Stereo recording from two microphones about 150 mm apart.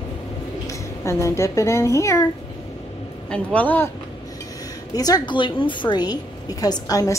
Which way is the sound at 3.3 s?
10° left (ahead or behind).